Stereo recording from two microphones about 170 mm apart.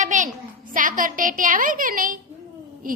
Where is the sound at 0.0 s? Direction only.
50° right (ahead or behind).